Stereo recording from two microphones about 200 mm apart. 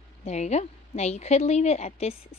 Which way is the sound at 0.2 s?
35° left (ahead or behind).